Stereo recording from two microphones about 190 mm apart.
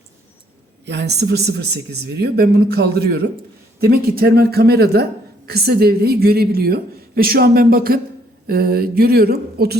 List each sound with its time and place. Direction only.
0.9 s a woman's voice: 60° right (ahead or behind)